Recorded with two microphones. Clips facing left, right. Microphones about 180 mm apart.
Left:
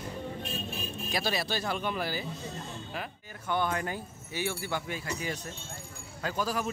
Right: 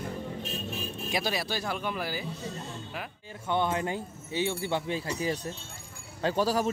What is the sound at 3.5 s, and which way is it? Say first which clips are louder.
Speech: right 2 dB; 25° right (ahead or behind).